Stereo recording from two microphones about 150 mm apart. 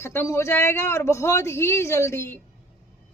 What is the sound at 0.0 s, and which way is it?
A woman's voice, 15° left (ahead or behind).